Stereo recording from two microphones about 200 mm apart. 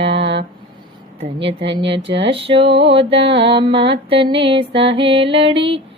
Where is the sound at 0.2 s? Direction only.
60° right (ahead or behind).